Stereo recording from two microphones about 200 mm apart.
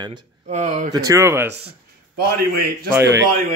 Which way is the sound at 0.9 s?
15° right (ahead or behind).